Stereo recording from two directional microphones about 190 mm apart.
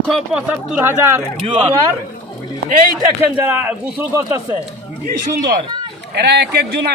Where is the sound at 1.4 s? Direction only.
30° right (ahead or behind).